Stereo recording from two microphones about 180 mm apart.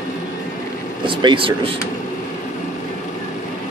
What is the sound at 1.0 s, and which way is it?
Speech, 30° right (ahead or behind).